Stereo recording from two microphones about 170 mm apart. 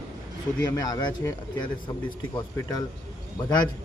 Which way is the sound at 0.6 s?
20° left (ahead or behind).